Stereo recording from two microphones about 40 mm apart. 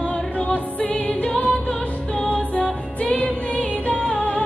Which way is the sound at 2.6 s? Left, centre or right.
Left.